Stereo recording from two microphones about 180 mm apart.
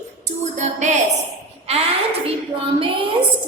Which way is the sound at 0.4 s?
40° right (ahead or behind).